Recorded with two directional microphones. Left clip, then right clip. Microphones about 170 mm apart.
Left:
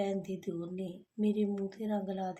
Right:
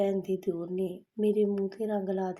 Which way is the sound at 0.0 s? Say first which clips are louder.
Right 7 dB; 30° right (ahead or behind).